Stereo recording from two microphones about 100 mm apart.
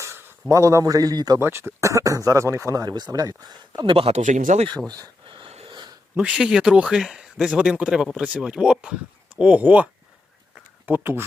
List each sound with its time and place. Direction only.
0.0 s a sound: 25° right (ahead or behind)
0.5 s speech: 30° right (ahead or behind)
1.4 s speech: 25° right (ahead or behind); by 3.9 s 45° right (ahead or behind)
3.9 s speech: 80° right
5.3 s a sound: 75° right (ahead or behind)
6.1 s speech: 10° right (ahead or behind)